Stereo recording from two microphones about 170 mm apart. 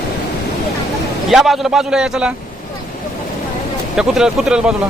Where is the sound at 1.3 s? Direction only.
Centre (ahead or behind).